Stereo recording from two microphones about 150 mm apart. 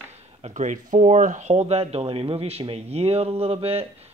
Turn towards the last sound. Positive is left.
turn(degrees=-40)  # may be behind; listen again after turning